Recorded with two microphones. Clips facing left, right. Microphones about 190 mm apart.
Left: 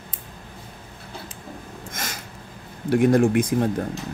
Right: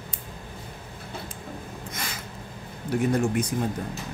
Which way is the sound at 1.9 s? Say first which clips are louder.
Left 3 dB; 45° left (ahead or behind).